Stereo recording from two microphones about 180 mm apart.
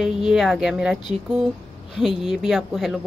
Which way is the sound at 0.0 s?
5° right (ahead or behind).